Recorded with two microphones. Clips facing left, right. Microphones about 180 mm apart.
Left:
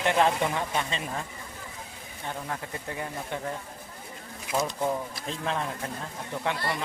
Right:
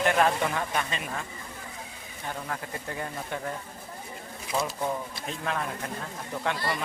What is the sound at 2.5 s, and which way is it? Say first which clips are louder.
Speech: even; 20° left (ahead or behind).